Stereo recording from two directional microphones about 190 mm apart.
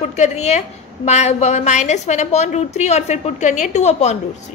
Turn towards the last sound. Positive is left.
turn(degrees=35)  # may be behind; listen again after turning